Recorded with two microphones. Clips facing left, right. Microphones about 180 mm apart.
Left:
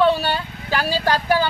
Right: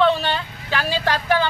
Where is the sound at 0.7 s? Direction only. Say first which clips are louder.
Left 2 dB; 40° left (ahead or behind).